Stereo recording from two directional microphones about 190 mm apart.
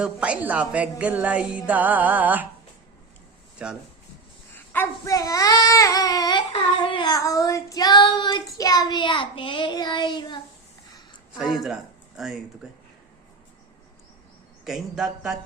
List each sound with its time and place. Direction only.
0.0 s a woman's voice: 5° right (ahead or behind)
3.6 s speech: 5° right (ahead or behind)
4.7 s speech: 15° left (ahead or behind)
8.5 s child singing: 20° left (ahead or behind)
11.3 s a man's voice: centre (ahead or behind)
14.6 s speech: centre (ahead or behind)